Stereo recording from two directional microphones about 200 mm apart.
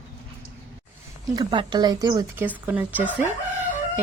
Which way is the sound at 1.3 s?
20° right (ahead or behind).